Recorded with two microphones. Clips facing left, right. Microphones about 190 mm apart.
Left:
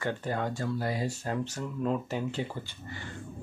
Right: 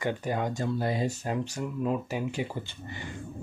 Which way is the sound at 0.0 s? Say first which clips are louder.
Right 2 dB; 15° right (ahead or behind).